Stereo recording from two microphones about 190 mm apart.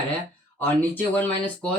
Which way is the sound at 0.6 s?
10° left (ahead or behind).